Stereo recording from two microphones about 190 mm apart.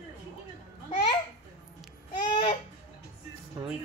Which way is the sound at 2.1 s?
25° left (ahead or behind).